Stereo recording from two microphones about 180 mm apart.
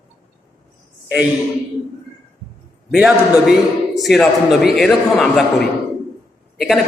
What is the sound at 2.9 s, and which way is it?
A man's voice, 5° right (ahead or behind).